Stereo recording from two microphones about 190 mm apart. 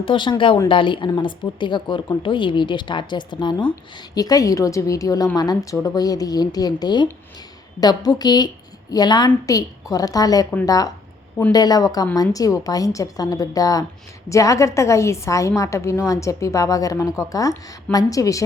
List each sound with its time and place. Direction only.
0.0 s a woman's voice: 25° left (ahead or behind)